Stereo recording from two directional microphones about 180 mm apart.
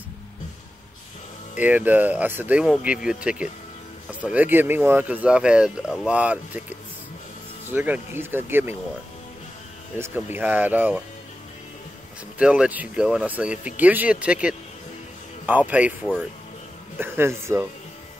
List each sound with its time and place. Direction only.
1.6 s speech: 10° right (ahead or behind)
9.9 s speech: 15° right (ahead or behind)
12.4 s speech: 5° right (ahead or behind)